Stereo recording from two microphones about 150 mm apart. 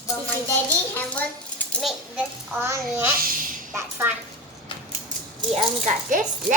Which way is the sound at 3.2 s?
75° right (ahead or behind).